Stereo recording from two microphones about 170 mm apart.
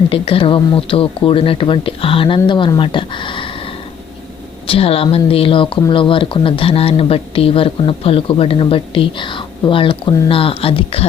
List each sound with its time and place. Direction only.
0.1 s speech: 30° left (ahead or behind)
4.6 s speech: 35° left (ahead or behind)